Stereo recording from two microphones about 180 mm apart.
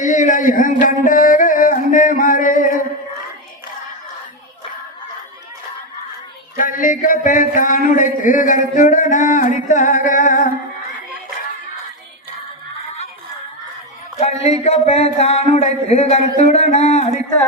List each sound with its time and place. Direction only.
0.0 s a sound: 45° left (ahead or behind)
6.6 s a man's voice: 50° left (ahead or behind)
14.2 s speech: 35° left (ahead or behind)